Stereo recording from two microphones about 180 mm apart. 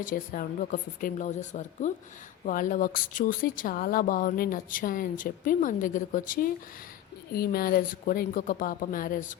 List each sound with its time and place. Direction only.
0.0 s speech: 45° left (ahead or behind)